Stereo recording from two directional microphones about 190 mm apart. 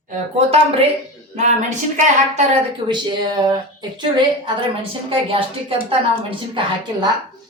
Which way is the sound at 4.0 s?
25° right (ahead or behind).